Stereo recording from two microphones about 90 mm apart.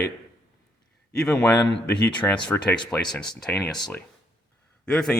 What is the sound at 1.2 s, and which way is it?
Speech, 10° left (ahead or behind).